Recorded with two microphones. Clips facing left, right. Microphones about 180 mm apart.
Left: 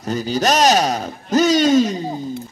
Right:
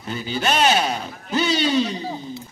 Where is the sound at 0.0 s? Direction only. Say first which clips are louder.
Left 6 dB; 40° left (ahead or behind).